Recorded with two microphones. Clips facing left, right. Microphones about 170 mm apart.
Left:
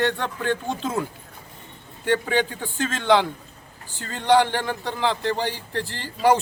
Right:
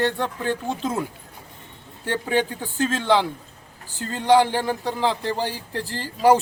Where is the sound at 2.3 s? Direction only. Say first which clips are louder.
Right 1 dB; 10° right (ahead or behind).